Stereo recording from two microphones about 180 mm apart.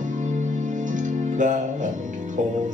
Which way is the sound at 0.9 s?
45° right (ahead or behind).